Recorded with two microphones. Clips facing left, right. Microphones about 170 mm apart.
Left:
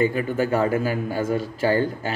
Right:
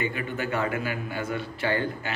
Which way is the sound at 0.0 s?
40° left (ahead or behind).